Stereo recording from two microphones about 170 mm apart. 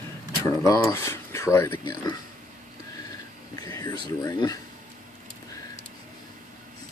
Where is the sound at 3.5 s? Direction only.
20° left (ahead or behind).